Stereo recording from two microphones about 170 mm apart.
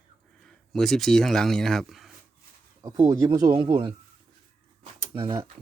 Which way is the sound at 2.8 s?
20° right (ahead or behind).